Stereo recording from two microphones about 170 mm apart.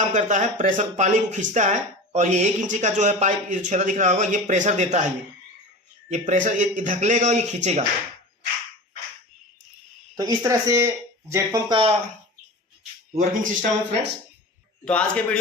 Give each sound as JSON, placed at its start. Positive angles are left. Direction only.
{"t": 0.0, "sound": "speech", "side_deg": -45}
{"t": 6.1, "sound": "speech", "side_deg": -45}
{"t": 10.2, "sound": "speech", "side_deg": -20}
{"t": 11.7, "sound": "speech", "side_deg": -30}
{"t": 13.1, "sound": "speech", "side_deg": -50}
{"t": 14.8, "sound": "a man's voice", "side_deg": 5}